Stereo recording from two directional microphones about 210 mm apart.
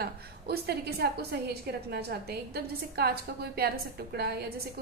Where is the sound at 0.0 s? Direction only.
50° right (ahead or behind).